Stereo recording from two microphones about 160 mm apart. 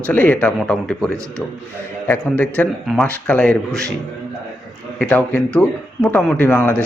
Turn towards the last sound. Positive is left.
turn(degrees=10)  # may be behind; listen again after turning